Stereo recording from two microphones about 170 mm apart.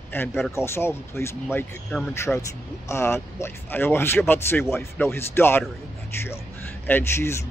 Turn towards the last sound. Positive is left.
turn(degrees=15)  # may be behind; listen again after turning